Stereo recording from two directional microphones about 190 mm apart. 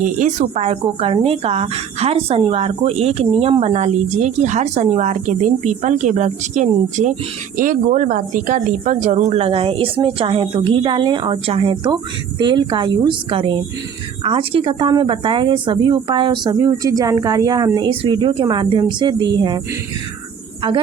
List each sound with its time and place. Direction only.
0.0 s a woman's voice: 40° right (ahead or behind); by 19.5 s 25° right (ahead or behind)